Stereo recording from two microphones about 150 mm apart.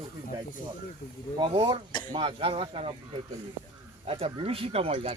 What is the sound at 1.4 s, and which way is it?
Speech, 35° right (ahead or behind).